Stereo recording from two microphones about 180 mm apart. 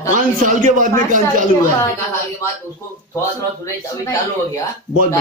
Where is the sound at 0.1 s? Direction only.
45° right (ahead or behind).